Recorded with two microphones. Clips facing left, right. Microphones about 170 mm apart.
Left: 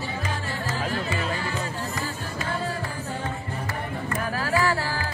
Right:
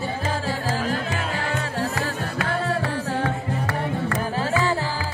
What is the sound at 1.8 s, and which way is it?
Music, 70° right (ahead or behind).